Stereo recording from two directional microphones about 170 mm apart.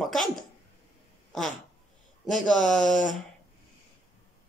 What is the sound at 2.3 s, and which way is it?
Speech, centre (ahead or behind).